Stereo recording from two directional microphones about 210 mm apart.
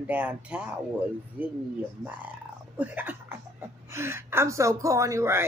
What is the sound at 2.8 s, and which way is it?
Speech, 10° right (ahead or behind).